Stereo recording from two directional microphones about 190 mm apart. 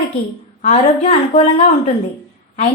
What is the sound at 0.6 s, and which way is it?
Speech, 40° left (ahead or behind).